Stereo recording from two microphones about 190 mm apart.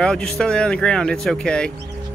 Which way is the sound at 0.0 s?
5° left (ahead or behind).